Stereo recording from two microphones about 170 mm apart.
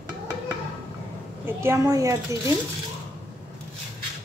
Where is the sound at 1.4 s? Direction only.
15° right (ahead or behind).